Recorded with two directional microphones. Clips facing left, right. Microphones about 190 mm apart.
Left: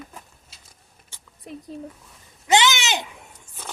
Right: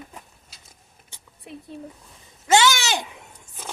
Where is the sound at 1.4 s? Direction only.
40° left (ahead or behind).